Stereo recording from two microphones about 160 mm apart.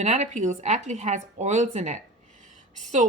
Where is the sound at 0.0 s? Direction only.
45° right (ahead or behind).